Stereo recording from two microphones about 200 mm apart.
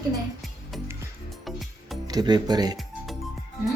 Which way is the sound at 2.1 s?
20° right (ahead or behind).